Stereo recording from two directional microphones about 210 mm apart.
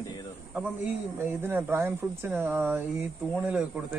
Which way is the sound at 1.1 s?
10° right (ahead or behind).